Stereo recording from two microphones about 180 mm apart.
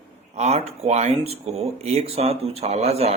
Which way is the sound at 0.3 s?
35° right (ahead or behind).